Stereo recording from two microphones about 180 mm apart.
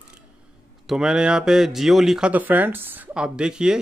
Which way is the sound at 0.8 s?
Centre (ahead or behind).